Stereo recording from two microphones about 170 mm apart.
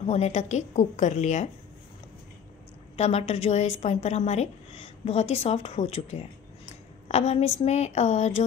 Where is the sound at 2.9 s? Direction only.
40° left (ahead or behind).